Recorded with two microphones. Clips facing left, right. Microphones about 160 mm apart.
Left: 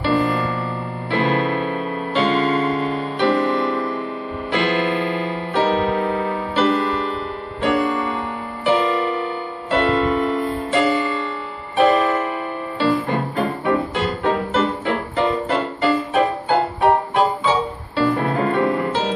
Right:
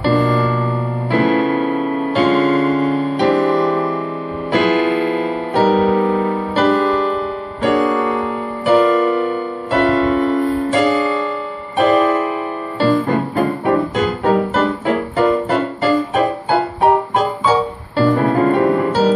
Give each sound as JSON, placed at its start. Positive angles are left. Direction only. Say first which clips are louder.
{"t": 0.0, "sound": "music", "louder": "right 4 dB", "side_deg": -40}
{"t": 13.7, "sound": "music", "louder": "right 4 dB", "side_deg": -45}